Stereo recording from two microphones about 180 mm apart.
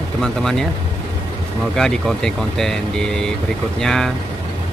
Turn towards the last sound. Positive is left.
turn(degrees=5)  # may be behind; listen again after turning